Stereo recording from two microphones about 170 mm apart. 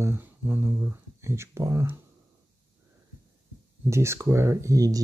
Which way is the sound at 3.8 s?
15° right (ahead or behind).